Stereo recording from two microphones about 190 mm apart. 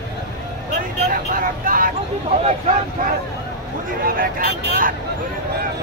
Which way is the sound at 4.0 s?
50° right (ahead or behind).